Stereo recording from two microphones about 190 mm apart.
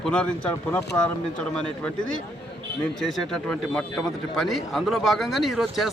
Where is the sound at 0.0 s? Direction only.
5° left (ahead or behind).